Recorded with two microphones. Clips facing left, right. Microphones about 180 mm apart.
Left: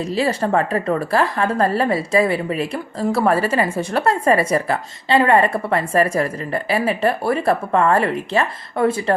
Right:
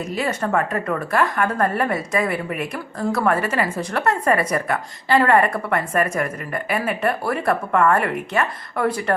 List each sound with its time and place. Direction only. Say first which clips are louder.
0.0 s a woman's voice: left 4 dB; 35° left (ahead or behind)